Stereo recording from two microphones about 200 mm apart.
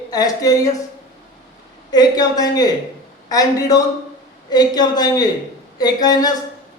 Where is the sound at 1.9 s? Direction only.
20° left (ahead or behind).